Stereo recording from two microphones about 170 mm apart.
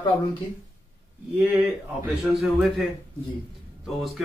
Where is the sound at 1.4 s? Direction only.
10° right (ahead or behind).